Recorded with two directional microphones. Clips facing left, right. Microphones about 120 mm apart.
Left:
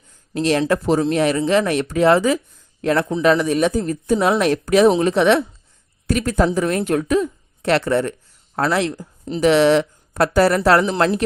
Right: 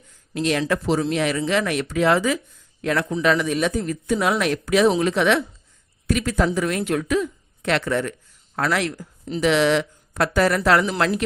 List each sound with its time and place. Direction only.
0.3 s speech: 35° left (ahead or behind)
9.4 s speech: 40° left (ahead or behind)